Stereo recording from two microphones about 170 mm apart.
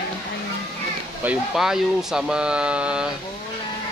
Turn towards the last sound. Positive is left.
turn(degrees=-5)  # may be behind; listen again after turning